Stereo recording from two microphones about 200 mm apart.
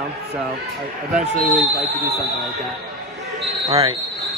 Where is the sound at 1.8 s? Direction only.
50° right (ahead or behind).